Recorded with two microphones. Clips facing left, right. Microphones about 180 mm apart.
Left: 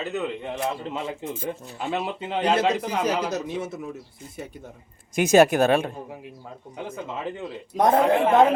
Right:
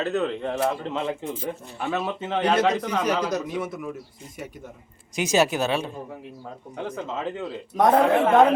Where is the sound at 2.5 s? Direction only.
30° left (ahead or behind).